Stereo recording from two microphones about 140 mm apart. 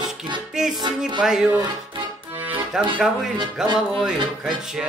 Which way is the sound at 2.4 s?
15° right (ahead or behind).